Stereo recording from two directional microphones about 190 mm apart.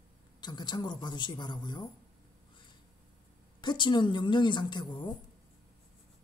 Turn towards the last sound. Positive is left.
turn(degrees=25)  # may be behind; listen again after turning